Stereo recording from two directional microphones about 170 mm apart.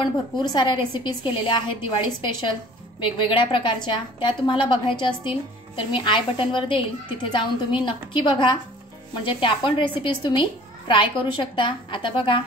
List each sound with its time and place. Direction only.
0.0 s a woman's voice: 25° left (ahead or behind)